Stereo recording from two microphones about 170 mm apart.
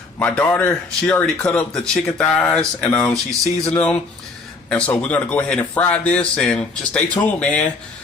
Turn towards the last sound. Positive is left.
turn(degrees=10)  # may be behind; listen again after turning